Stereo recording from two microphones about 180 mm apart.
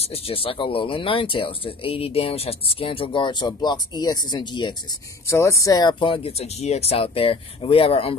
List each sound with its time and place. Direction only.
0.0 s speech: 30° left (ahead or behind)